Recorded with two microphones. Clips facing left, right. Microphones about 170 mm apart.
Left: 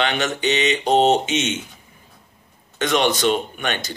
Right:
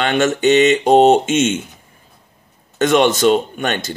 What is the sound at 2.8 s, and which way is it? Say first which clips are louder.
Speech: right 6 dB; 45° right (ahead or behind).